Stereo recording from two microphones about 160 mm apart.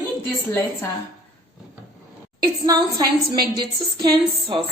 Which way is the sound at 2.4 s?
25° right (ahead or behind).